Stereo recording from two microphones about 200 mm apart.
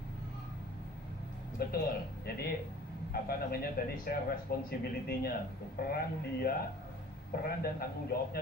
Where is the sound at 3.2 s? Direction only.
50° left (ahead or behind).